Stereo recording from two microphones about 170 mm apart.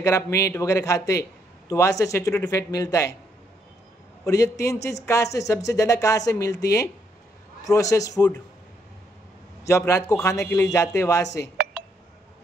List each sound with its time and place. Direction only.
0.0 s speech: 20° left (ahead or behind)
4.2 s speech: 20° left (ahead or behind)
9.7 s speech: 15° left (ahead or behind)